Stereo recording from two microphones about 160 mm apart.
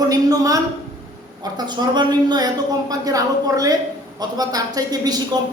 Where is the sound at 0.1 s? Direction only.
20° right (ahead or behind).